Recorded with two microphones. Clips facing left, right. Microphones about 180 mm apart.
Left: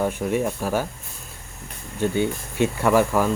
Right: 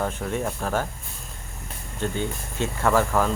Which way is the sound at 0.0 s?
15° left (ahead or behind).